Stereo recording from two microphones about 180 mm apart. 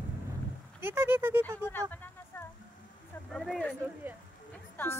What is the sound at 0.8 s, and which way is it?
Speech, 10° right (ahead or behind).